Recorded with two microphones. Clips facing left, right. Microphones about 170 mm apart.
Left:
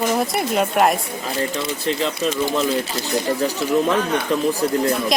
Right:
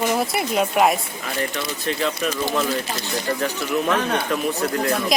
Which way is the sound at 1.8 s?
25° left (ahead or behind).